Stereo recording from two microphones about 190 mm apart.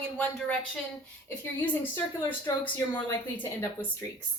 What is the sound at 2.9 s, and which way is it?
A woman's voice, 10° left (ahead or behind).